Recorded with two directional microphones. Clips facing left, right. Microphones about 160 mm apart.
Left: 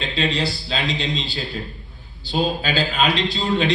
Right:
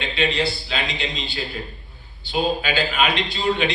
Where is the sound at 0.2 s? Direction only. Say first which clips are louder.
Right 1 dB; 35° left (ahead or behind).